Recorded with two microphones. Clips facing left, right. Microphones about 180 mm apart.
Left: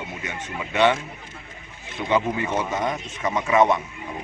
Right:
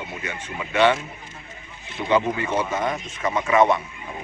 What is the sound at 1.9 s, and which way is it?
A man's voice, 15° left (ahead or behind).